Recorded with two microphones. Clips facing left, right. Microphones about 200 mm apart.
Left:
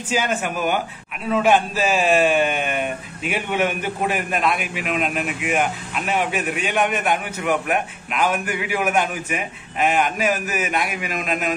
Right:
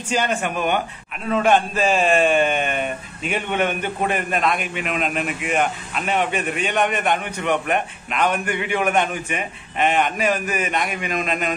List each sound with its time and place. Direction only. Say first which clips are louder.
0.1 s a man's voice: right 1 dB; 5° left (ahead or behind)